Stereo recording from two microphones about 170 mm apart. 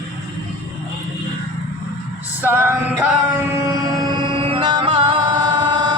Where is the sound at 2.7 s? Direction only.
10° right (ahead or behind).